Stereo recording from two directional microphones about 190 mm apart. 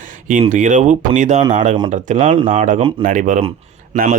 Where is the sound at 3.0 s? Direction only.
40° right (ahead or behind).